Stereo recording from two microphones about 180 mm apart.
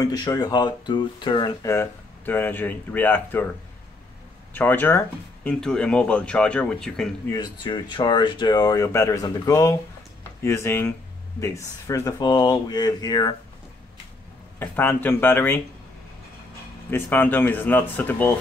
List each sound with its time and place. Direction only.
0.0 s speech: 20° left (ahead or behind)
4.6 s speech: 10° left (ahead or behind)
7.2 s speech: 25° left (ahead or behind)
14.6 s speech: 10° left (ahead or behind)
16.9 s speech: 10° left (ahead or behind)